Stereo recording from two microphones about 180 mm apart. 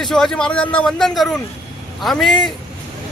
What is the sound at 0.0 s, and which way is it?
Speech, centre (ahead or behind).